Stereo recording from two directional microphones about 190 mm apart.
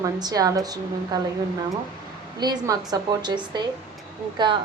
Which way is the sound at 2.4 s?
20° right (ahead or behind).